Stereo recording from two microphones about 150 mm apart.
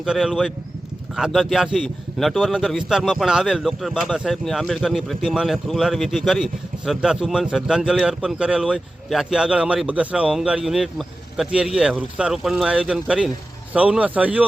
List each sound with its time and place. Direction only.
0.0 s speech: 5° right (ahead or behind)